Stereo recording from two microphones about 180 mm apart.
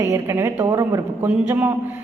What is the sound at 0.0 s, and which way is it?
A woman's voice, 15° right (ahead or behind).